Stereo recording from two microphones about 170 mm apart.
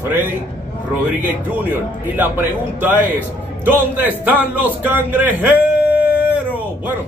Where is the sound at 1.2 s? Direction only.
10° right (ahead or behind).